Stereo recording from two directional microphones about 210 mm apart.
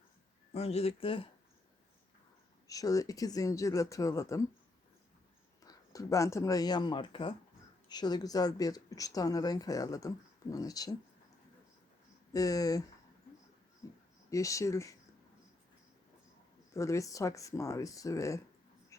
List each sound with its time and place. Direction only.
0.5 s speech: 30° left (ahead or behind)
2.6 s speech: 15° left (ahead or behind)
5.6 s speech: 15° left (ahead or behind)
12.3 s speech: 15° left (ahead or behind)
14.3 s speech: 15° left (ahead or behind)
16.7 s speech: 15° left (ahead or behind)